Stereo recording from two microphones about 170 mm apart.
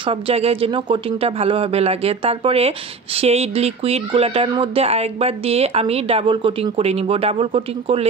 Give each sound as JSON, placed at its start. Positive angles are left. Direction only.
{"t": 0.0, "sound": "speech", "side_deg": -35}